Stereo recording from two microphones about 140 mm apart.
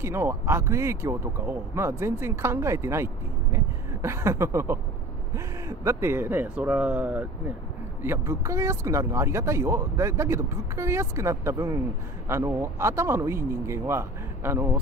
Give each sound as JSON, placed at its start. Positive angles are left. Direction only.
{"t": 0.0, "sound": "speech", "side_deg": -15}